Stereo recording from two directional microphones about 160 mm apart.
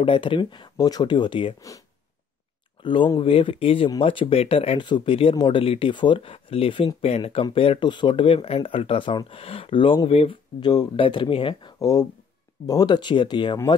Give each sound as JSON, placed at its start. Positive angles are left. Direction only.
{"t": 0.0, "sound": "speech", "side_deg": 30}
{"t": 2.8, "sound": "speech", "side_deg": 30}
{"t": 11.8, "sound": "speech", "side_deg": 25}